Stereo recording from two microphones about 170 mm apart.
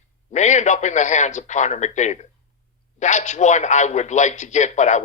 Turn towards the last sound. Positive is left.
turn(degrees=45)  # may be behind; listen again after turning